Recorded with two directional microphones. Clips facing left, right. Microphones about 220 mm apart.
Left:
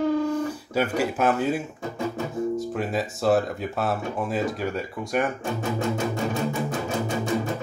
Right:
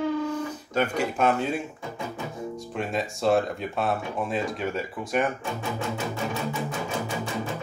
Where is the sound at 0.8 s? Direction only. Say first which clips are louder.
Left 1 dB; 5° left (ahead or behind).